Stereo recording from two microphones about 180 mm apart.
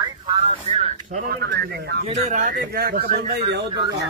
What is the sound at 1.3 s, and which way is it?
Speech, 65° right (ahead or behind).